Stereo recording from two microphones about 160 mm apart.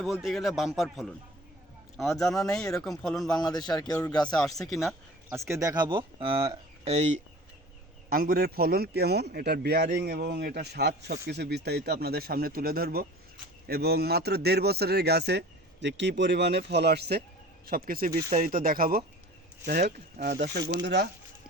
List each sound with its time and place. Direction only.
0.0 s a man's voice: centre (ahead or behind)
3.4 s speech: 25° left (ahead or behind)
4.6 s a man's voice: centre (ahead or behind)
5.3 s speech: 20° right (ahead or behind); by 7.2 s 45° right (ahead or behind)
8.1 s a man's voice: 65° right (ahead or behind); by 17.2 s 85° right
17.7 s speech: 65° right (ahead or behind); by 21.1 s 90° right